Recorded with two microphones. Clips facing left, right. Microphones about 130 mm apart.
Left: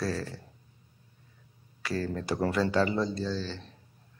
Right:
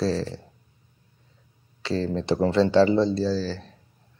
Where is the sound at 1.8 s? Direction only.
25° right (ahead or behind).